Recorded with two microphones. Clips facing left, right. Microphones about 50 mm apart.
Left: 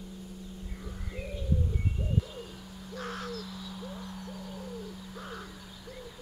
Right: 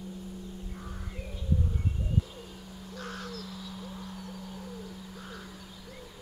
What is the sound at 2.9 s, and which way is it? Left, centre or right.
Owl, centre.